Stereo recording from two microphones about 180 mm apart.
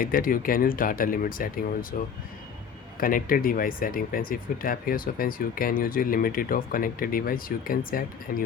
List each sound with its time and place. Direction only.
0.0 s speech: 50° left (ahead or behind)
3.0 s speech: 50° left (ahead or behind)